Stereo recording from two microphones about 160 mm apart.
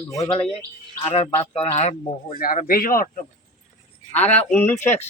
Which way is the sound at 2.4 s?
60° left (ahead or behind).